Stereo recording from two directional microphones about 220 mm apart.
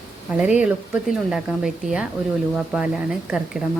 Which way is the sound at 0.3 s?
5° right (ahead or behind).